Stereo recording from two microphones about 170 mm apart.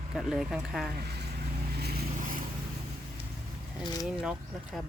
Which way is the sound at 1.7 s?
70° right (ahead or behind).